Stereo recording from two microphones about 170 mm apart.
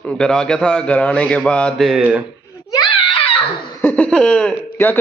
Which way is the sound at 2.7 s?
25° left (ahead or behind).